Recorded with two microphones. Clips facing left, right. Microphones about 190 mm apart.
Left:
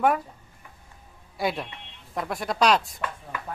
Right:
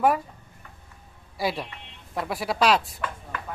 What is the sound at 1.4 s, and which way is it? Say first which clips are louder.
Speech: even; centre (ahead or behind).